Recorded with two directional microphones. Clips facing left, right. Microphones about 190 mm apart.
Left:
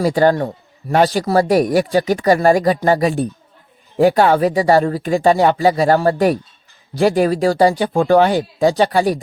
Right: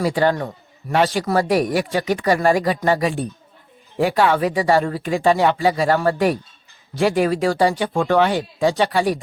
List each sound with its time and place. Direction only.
0.0 s a man's voice: 40° left (ahead or behind)